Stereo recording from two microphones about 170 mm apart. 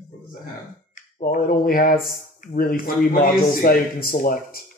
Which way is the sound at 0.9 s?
55° left (ahead or behind).